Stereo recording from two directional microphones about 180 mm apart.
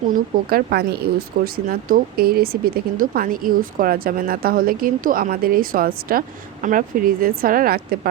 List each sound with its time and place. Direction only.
0.1 s speech: 60° right (ahead or behind)